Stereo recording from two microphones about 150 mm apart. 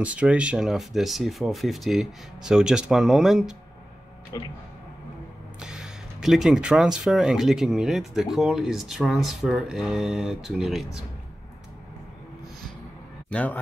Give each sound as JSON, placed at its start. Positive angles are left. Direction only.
{"t": 0.0, "sound": "speech", "side_deg": -10}
{"t": 4.3, "sound": "speech", "side_deg": 25}
{"t": 5.6, "sound": "speech", "side_deg": -5}
{"t": 13.3, "sound": "speech", "side_deg": 10}